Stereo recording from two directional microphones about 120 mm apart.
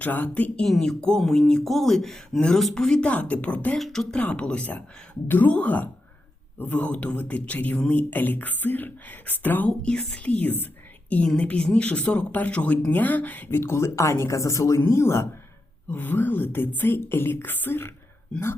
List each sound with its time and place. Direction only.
0.0 s speech: 15° left (ahead or behind)
3.8 s speech: centre (ahead or behind); by 17.9 s 20° left (ahead or behind)